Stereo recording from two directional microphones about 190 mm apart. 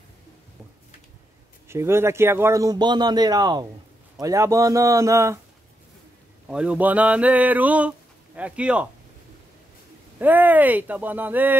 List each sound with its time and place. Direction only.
1.7 s a man's voice: 15° right (ahead or behind)
6.4 s a man's voice: 5° right (ahead or behind)
10.1 s a man's voice: 10° right (ahead or behind)